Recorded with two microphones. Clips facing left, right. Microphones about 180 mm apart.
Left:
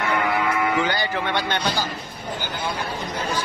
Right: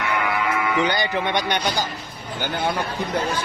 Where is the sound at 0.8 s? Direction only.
20° right (ahead or behind).